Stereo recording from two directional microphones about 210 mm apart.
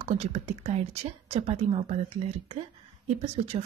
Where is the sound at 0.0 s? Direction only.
30° right (ahead or behind).